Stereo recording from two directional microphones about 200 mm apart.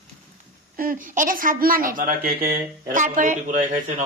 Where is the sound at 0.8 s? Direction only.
45° right (ahead or behind).